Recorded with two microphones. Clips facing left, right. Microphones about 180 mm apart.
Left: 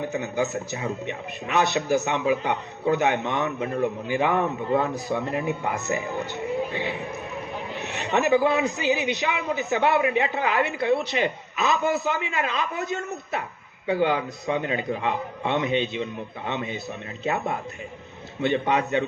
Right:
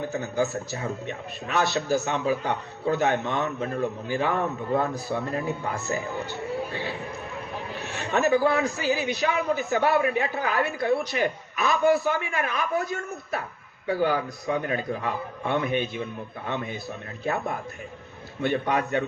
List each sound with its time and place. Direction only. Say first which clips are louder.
0.0 s a man's voice: even; 20° left (ahead or behind)